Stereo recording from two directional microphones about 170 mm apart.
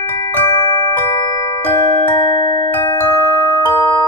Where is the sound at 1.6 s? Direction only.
20° left (ahead or behind).